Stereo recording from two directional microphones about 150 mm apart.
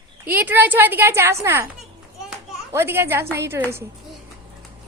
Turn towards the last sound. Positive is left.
turn(degrees=-15)  # may be behind; listen again after turning